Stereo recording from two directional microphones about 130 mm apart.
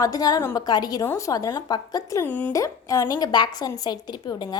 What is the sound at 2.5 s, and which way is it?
A woman's voice, 25° left (ahead or behind).